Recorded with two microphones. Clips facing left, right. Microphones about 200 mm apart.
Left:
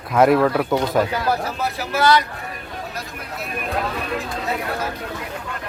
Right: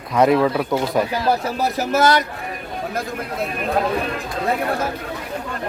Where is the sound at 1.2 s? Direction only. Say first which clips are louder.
Right 3 dB; 40° right (ahead or behind).